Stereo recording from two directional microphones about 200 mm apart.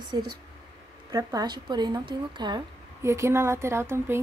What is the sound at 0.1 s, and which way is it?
A woman's voice, 20° right (ahead or behind).